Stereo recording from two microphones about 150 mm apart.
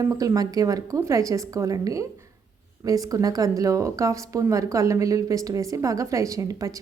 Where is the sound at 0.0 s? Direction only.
20° right (ahead or behind).